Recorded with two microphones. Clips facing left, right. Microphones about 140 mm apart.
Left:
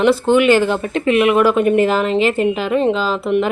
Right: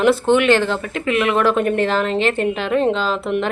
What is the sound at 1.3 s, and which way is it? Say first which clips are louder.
A woman's voice: left 2 dB; 5° left (ahead or behind).